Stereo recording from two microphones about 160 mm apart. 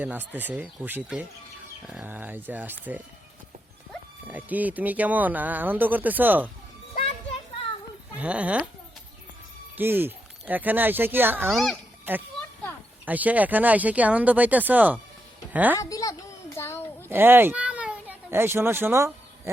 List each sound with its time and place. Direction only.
0.0 s speech: 10° right (ahead or behind)
4.3 s speech: 10° right (ahead or behind)
8.2 s speech: 10° right (ahead or behind)
9.7 s speech: 15° right (ahead or behind)
11.4 s a child's voice: centre (ahead or behind)
12.1 s a child's voice: 10° right (ahead or behind)
15.8 s a sound: 20° left (ahead or behind)
17.1 s a child's voice: 15° right (ahead or behind)